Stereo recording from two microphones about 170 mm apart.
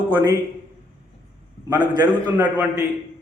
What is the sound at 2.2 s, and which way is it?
Speech, 10° right (ahead or behind).